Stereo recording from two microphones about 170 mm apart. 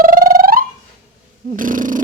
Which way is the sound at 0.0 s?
55° right (ahead or behind).